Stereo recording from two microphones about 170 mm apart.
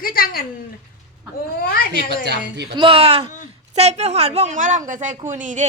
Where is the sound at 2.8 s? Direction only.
35° right (ahead or behind).